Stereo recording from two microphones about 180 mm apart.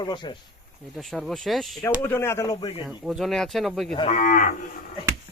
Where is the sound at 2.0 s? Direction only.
15° left (ahead or behind).